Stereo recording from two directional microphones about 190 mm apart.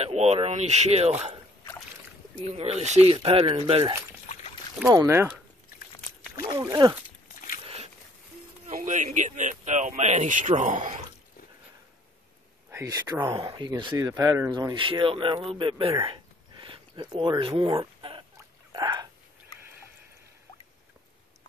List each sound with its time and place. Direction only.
0.0 s speech: 35° right (ahead or behind)
2.4 s speech: 30° right (ahead or behind)
4.8 s speech: 15° right (ahead or behind)
6.4 s speech: 20° right (ahead or behind)
7.6 s a sound: 35° right (ahead or behind)
8.6 s speech: 40° right (ahead or behind)
12.7 s speech: 15° right (ahead or behind)
16.0 s a sound: 25° right (ahead or behind)
18.7 s whispering: 20° right (ahead or behind)